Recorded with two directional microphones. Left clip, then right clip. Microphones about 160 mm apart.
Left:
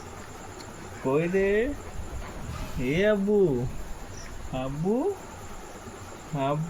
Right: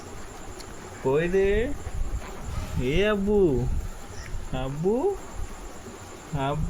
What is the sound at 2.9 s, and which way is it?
Speech, 65° right (ahead or behind).